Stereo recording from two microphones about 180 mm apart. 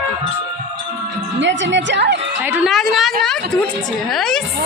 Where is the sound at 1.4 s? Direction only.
90° right.